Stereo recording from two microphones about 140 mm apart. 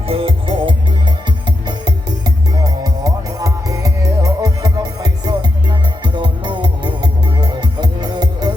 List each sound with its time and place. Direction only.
0.0 s music: 40° right (ahead or behind)